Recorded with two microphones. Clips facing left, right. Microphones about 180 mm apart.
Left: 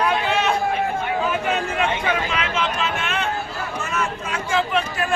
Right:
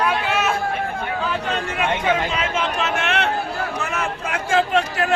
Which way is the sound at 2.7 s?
70° right (ahead or behind).